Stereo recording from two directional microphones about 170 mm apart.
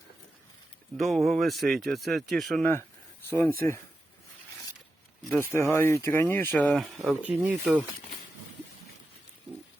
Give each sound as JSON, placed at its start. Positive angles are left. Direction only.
{"t": 0.9, "sound": "speech", "side_deg": 0}
{"t": 3.2, "sound": "speech", "side_deg": 15}
{"t": 5.4, "sound": "speech", "side_deg": 15}